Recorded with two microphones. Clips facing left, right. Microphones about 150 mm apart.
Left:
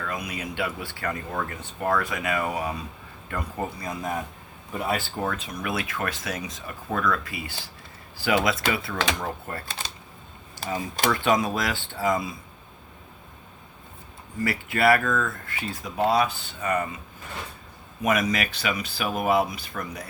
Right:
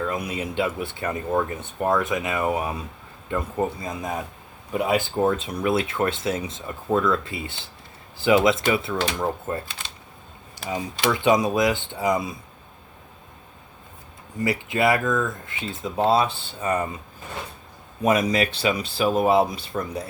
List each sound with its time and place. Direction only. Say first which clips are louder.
0.0 s speech: right 5 dB; 25° right (ahead or behind)
10.6 s speech: right 1 dB; 35° left (ahead or behind)
11.1 s speech: right 4 dB; 20° right (ahead or behind)
14.3 s speech: right 3 dB; 20° right (ahead or behind)
18.0 s speech: right 4 dB; 30° right (ahead or behind)